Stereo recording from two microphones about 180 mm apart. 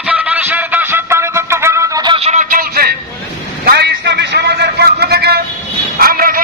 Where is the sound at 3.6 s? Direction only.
65° right (ahead or behind).